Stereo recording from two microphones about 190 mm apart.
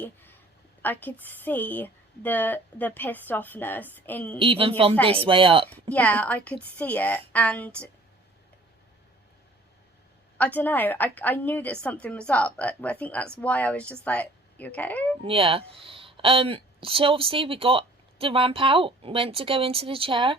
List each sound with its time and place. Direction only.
0.0 s a woman's voice: 10° left (ahead or behind)
4.4 s a woman's voice: 30° right (ahead or behind)
5.9 s a woman's voice: 10° left (ahead or behind)
10.3 s a woman's voice: 10° left (ahead or behind)
15.2 s a woman's voice: 30° right (ahead or behind)